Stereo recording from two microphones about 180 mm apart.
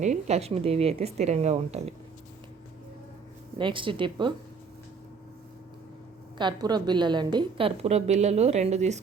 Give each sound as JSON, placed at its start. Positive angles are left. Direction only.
{"t": 0.0, "sound": "a woman's voice", "side_deg": -40}
{"t": 3.6, "sound": "speech", "side_deg": -30}
{"t": 6.4, "sound": "a woman's voice", "side_deg": -25}